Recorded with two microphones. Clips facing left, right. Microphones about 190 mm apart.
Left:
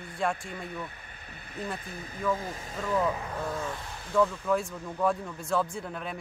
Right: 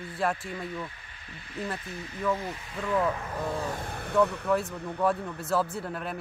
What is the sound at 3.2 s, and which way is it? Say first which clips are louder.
Speech: right 1 dB; centre (ahead or behind).